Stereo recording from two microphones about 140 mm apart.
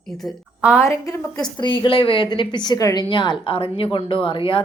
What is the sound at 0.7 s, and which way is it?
Speech, 20° left (ahead or behind).